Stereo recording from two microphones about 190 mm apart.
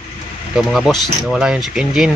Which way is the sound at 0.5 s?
Centre (ahead or behind).